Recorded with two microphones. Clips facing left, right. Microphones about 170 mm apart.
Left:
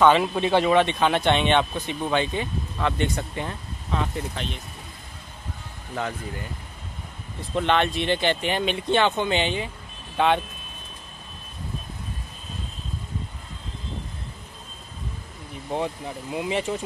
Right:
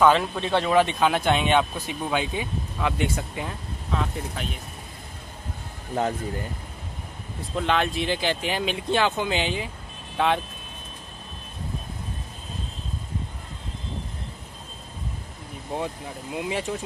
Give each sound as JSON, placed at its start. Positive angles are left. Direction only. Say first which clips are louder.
{"t": 0.2, "sound": "speech", "louder": "left 4 dB", "side_deg": 10}
{"t": 0.7, "sound": "speech", "louder": "even", "side_deg": -5}
{"t": 5.9, "sound": "speech", "louder": "right 4 dB", "side_deg": -40}
{"t": 7.5, "sound": "speech", "louder": "left 2 dB", "side_deg": -5}
{"t": 15.7, "sound": "speech", "louder": "left 3 dB", "side_deg": 0}